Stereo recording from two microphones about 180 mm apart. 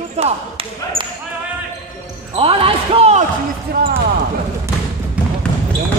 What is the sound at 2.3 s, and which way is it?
Speech, 30° right (ahead or behind).